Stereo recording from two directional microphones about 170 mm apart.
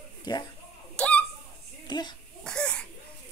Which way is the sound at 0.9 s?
5° left (ahead or behind).